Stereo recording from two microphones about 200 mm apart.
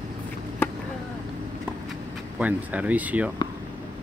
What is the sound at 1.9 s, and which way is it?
Speech, 5° right (ahead or behind).